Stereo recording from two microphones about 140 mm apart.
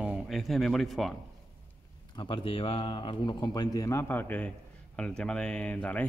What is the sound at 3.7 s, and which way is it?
Speech, 20° left (ahead or behind).